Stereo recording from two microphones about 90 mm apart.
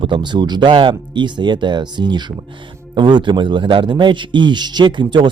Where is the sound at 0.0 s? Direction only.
60° right (ahead or behind).